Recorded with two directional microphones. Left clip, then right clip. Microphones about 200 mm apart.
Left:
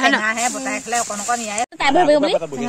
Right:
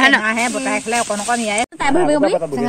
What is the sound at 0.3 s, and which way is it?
Speech, 35° right (ahead or behind).